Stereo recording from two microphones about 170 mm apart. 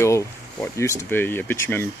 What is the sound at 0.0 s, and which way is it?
Speech, 15° left (ahead or behind).